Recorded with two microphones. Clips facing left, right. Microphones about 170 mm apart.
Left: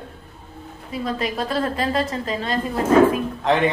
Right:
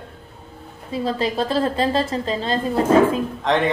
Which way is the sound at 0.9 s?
30° right (ahead or behind).